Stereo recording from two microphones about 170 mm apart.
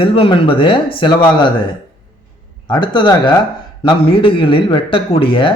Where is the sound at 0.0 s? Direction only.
30° left (ahead or behind).